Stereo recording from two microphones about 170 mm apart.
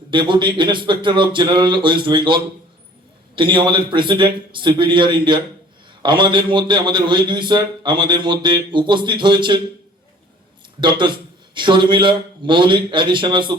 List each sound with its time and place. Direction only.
0.1 s a man's voice: 30° right (ahead or behind)
10.8 s a man's voice: 25° right (ahead or behind)